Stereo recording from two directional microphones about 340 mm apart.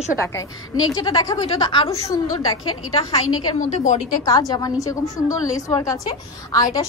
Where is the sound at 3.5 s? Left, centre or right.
Left.